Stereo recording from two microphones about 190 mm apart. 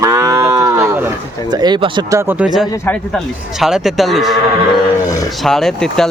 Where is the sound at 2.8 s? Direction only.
10° left (ahead or behind).